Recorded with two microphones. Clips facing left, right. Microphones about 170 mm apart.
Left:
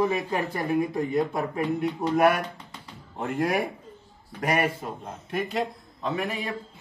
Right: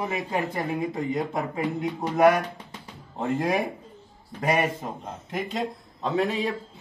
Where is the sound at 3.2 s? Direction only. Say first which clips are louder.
Right 1 dB; 25° right (ahead or behind).